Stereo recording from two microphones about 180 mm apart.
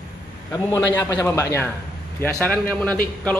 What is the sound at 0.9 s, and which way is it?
A man's voice, 15° left (ahead or behind).